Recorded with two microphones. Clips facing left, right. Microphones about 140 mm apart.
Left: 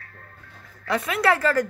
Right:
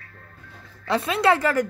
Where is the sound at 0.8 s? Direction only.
25° right (ahead or behind).